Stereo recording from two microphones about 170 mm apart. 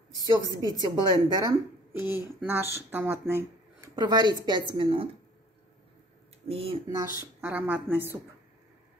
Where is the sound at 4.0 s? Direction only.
25° right (ahead or behind).